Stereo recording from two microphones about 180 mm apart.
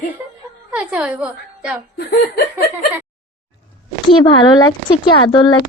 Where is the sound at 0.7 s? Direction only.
5° right (ahead or behind).